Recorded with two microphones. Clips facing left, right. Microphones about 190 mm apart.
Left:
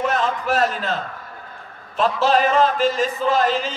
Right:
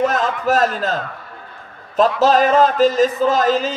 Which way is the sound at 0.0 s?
40° right (ahead or behind).